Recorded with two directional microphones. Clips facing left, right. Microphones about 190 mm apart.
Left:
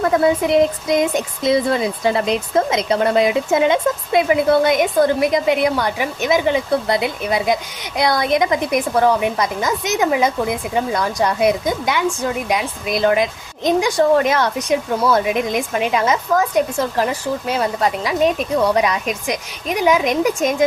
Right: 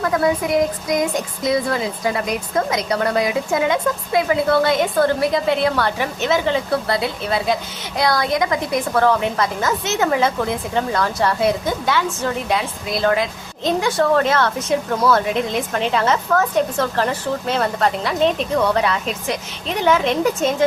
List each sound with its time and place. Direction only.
0.0 s speech: 25° left (ahead or behind)